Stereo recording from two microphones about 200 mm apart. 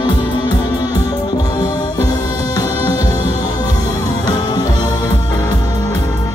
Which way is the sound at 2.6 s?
20° left (ahead or behind).